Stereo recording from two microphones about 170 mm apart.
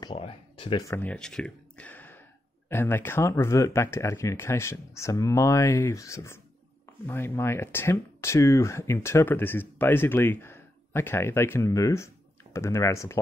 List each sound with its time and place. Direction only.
0.0 s speech: 30° left (ahead or behind)
0.8 s speech: 10° left (ahead or behind)